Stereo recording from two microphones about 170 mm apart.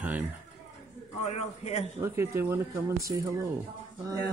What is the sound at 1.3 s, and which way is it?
Speech, 40° left (ahead or behind).